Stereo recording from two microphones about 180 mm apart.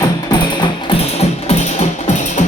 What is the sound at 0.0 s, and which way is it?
Music, 25° left (ahead or behind).